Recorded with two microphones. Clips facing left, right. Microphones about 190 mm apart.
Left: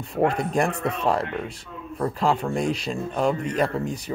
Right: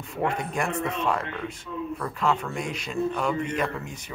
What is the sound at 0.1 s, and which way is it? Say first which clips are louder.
A man's voice: left 6 dB; 35° left (ahead or behind).